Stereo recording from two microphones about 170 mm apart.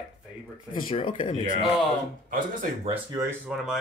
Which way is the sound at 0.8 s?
30° left (ahead or behind).